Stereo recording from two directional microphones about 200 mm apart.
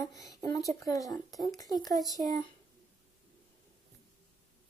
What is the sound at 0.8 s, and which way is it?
Speech, 15° left (ahead or behind).